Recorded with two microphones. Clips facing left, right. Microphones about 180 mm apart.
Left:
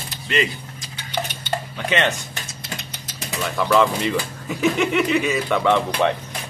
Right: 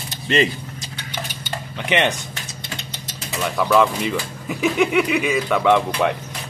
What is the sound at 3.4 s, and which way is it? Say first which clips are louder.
Speech: right 1 dB; 5° right (ahead or behind).